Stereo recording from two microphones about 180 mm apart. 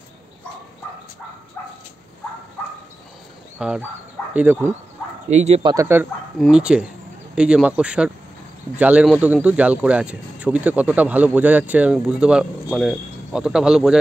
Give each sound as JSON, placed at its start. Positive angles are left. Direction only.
{"t": 3.5, "sound": "fowl", "side_deg": -5}
{"t": 4.3, "sound": "speech", "side_deg": -10}
{"t": 5.3, "sound": "speech", "side_deg": -40}
{"t": 5.6, "sound": "speech", "side_deg": -25}
{"t": 6.4, "sound": "speech", "side_deg": -5}